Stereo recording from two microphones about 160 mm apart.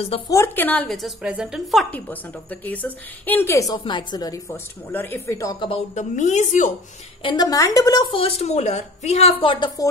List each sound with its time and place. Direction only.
0.3 s a woman's voice: 15° left (ahead or behind); by 1.9 s centre (ahead or behind)
1.9 s a woman's voice: 10° left (ahead or behind); by 4.4 s 25° left (ahead or behind)
4.5 s a woman's voice: 10° left (ahead or behind)
5.7 s a woman's voice: 45° left (ahead or behind)
7.2 s a woman's voice: 25° left (ahead or behind)